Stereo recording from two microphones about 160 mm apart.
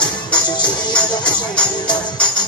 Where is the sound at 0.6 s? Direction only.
5° left (ahead or behind).